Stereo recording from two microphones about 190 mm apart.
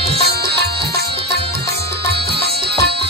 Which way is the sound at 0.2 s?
55° right (ahead or behind).